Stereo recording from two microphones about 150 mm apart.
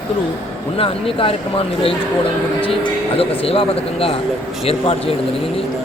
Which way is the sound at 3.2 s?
40° left (ahead or behind).